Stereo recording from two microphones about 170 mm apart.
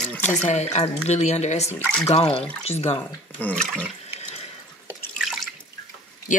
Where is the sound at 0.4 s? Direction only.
40° left (ahead or behind).